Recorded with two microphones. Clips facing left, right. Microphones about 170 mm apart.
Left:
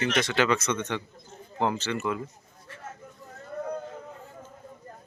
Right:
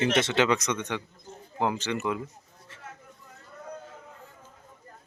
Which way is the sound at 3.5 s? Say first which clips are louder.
Left 11 dB; 55° left (ahead or behind).